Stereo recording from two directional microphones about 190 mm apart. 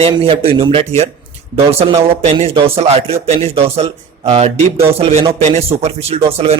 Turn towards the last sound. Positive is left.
turn(degrees=-30)  # may be behind; listen again after turning